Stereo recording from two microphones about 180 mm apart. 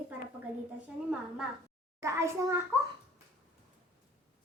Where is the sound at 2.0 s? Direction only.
15° right (ahead or behind).